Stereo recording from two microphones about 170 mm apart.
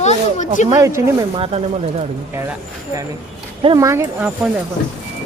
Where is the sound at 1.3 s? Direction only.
35° right (ahead or behind).